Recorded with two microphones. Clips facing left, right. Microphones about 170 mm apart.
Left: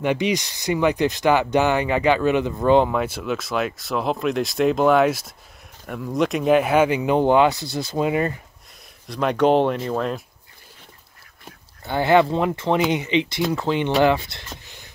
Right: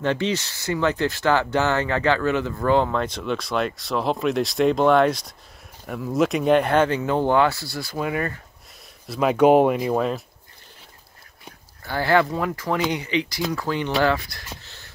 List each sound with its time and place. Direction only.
0.0 s speech: 15° left (ahead or behind)
9.0 s speech: 5° right (ahead or behind)
11.8 s speech: 20° left (ahead or behind)
14.6 s a sound: 15° left (ahead or behind)